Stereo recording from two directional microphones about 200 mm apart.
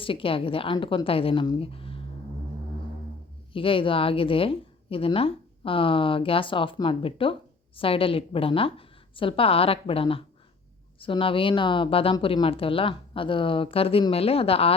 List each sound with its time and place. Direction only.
0.0 s a woman's voice: 25° left (ahead or behind)
3.5 s a woman's voice: 25° left (ahead or behind)